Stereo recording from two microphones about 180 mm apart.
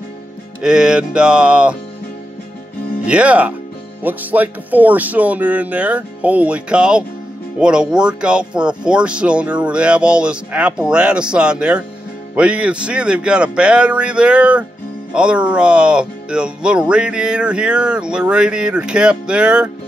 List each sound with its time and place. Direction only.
0.6 s speech: 5° right (ahead or behind)
3.1 s speech: 5° right (ahead or behind)